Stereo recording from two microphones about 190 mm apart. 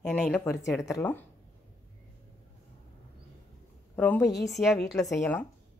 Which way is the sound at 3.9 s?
10° left (ahead or behind).